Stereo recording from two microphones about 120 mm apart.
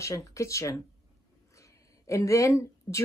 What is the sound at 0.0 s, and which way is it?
A woman's voice, 25° left (ahead or behind).